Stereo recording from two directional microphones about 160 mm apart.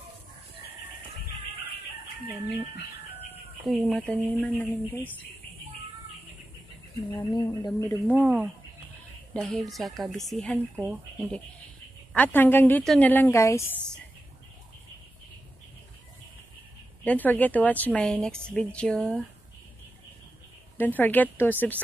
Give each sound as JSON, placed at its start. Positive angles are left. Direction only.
{"t": 3.6, "sound": "speech", "side_deg": 0}
{"t": 7.2, "sound": "speech", "side_deg": 25}
{"t": 8.1, "sound": "speech", "side_deg": -10}
{"t": 9.3, "sound": "speech", "side_deg": 5}
{"t": 17.0, "sound": "speech", "side_deg": 10}
{"t": 20.7, "sound": "speech", "side_deg": 10}